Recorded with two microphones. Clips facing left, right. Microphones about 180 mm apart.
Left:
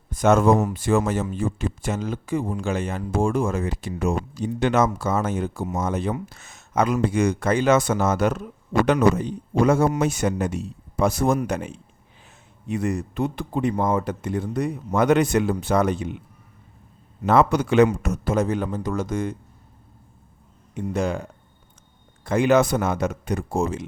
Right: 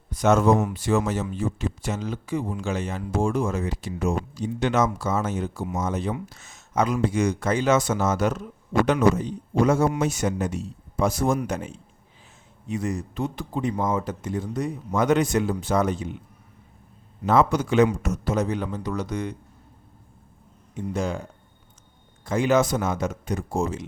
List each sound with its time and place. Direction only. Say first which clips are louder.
0.1 s speech: left 2 dB; 50° left (ahead or behind)
17.2 s speech: left 2 dB; 65° left (ahead or behind)
17.8 s speech: left 2 dB; 55° left (ahead or behind)
20.7 s speech: left 3 dB; 60° left (ahead or behind)